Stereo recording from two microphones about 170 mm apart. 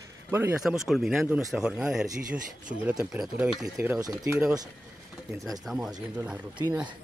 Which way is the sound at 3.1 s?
5° right (ahead or behind).